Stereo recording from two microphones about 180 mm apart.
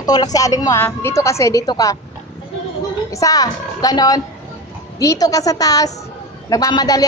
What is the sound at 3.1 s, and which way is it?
A woman's voice, 20° left (ahead or behind).